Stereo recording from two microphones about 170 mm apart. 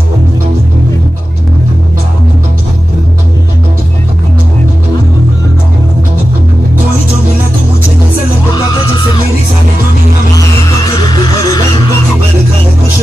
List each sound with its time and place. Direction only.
11.0 s music: 25° left (ahead or behind)